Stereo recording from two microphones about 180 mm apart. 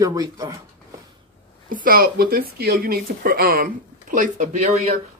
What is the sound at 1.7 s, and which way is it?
Speech, 50° right (ahead or behind).